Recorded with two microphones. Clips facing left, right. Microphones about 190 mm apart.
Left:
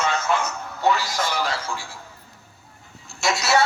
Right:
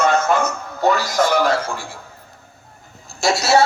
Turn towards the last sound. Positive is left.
turn(degrees=-30)  # may be behind; listen again after turning